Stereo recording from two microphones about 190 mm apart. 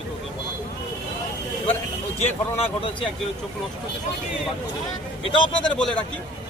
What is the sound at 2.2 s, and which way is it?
Speech, 30° left (ahead or behind).